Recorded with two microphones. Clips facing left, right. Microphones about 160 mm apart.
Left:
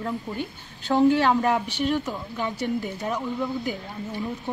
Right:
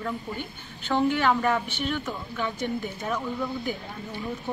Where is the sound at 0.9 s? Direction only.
15° left (ahead or behind).